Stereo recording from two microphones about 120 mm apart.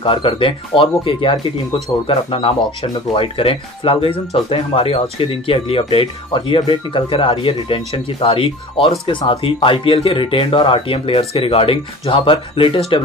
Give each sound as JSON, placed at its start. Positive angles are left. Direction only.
{"t": 0.0, "sound": "speech", "side_deg": 45}